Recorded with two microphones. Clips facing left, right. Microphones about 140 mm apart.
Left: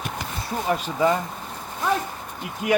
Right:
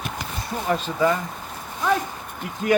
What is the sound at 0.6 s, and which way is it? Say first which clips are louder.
Speech: even; 15° left (ahead or behind).